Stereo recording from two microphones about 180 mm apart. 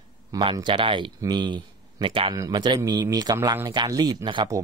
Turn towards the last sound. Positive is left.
turn(degrees=-20)  # may be behind; listen again after turning